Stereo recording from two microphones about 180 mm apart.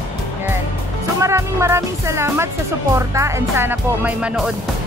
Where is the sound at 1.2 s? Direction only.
15° right (ahead or behind).